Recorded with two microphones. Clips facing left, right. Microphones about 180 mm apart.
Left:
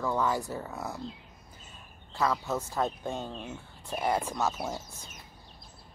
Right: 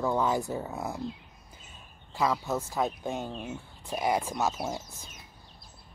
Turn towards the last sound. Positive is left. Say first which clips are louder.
# right 1 dB
turn(degrees=-15)  # may be behind; listen again after turning